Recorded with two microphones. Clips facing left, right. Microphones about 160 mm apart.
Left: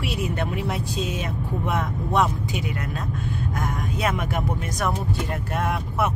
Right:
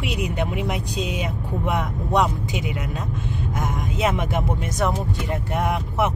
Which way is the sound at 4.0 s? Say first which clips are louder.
Right 3 dB; 20° right (ahead or behind).